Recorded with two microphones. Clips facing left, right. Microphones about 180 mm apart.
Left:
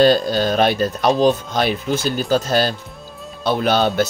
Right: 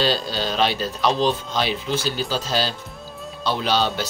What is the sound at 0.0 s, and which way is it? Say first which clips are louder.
Speech: left 9 dB; 50° left (ahead or behind).